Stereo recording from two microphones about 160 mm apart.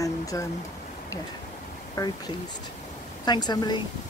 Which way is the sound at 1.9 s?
20° left (ahead or behind).